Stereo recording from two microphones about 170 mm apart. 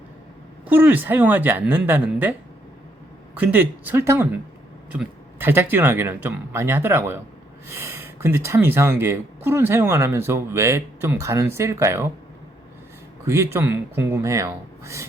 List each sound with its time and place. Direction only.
0.6 s speech: 10° right (ahead or behind)
3.3 s speech: 10° right (ahead or behind)
13.2 s speech: 15° right (ahead or behind)